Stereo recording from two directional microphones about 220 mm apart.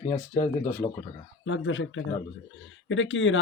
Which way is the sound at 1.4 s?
60° left (ahead or behind).